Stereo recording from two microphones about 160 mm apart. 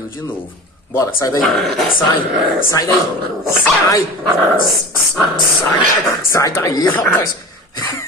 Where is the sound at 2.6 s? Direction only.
20° left (ahead or behind).